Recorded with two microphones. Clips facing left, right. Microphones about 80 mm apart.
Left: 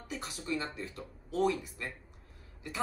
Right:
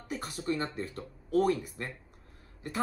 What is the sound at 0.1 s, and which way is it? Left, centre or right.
Speech, right.